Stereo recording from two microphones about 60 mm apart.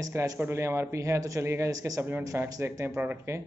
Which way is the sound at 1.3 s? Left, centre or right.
Right.